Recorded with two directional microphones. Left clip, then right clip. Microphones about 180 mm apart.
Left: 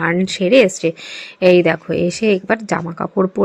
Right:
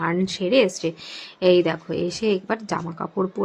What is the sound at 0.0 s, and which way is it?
Speech, 20° left (ahead or behind).